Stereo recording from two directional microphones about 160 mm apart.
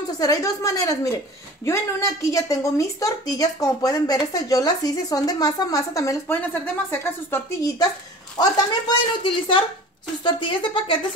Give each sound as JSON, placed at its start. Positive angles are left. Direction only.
{"t": 0.2, "sound": "speech", "side_deg": 20}